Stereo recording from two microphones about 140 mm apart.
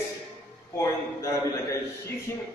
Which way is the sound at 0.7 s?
25° left (ahead or behind).